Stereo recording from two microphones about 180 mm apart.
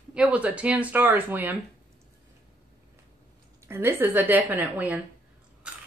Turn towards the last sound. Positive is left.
turn(degrees=-10)  # may be behind; listen again after turning